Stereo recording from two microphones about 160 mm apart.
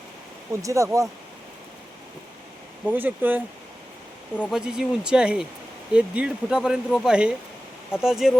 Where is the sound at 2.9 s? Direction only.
10° right (ahead or behind).